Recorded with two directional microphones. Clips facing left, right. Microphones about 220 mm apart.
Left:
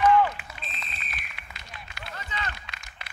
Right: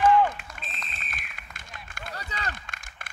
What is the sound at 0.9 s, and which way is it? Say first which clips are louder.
Run: even; 45° right (ahead or behind).